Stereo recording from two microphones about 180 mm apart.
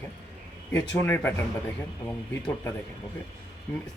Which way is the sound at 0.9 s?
15° left (ahead or behind).